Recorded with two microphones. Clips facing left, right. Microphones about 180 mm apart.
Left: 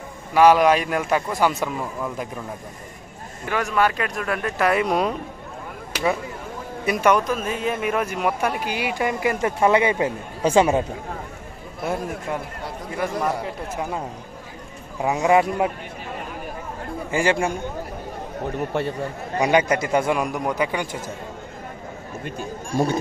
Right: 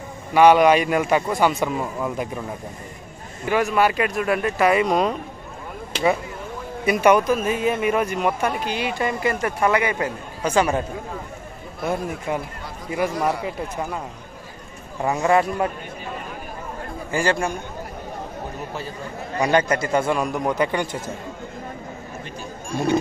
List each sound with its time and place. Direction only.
0.3 s a man's voice: centre (ahead or behind)
3.4 s speech: 10° right (ahead or behind)
6.9 s a man's voice: 5° right (ahead or behind); by 10.8 s 25° left (ahead or behind)
11.8 s a man's voice: 5° left (ahead or behind)
12.9 s speech: 10° right (ahead or behind)
15.0 s a man's voice: 10° left (ahead or behind)
17.1 s a man's voice: 20° left (ahead or behind)
19.4 s a man's voice: 15° left (ahead or behind)